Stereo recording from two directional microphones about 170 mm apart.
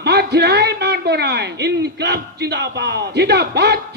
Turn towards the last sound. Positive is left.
turn(degrees=-75)  # may be behind; listen again after turning